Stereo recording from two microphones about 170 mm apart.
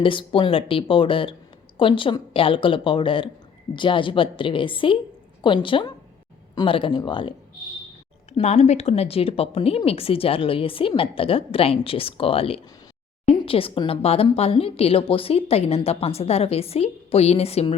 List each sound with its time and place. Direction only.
0.0 s a woman's voice: 30° left (ahead or behind)